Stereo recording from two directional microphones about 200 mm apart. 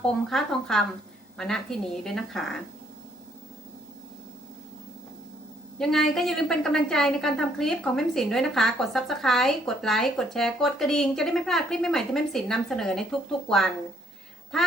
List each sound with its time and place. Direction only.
0.0 s a woman's voice: centre (ahead or behind)
5.8 s a woman's voice: centre (ahead or behind)